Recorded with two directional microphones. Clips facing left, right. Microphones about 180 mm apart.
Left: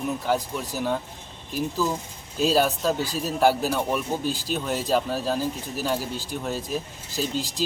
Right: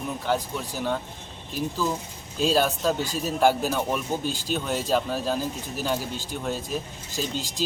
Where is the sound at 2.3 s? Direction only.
5° left (ahead or behind).